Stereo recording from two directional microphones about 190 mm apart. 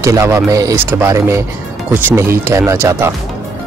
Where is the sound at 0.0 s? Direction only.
15° right (ahead or behind).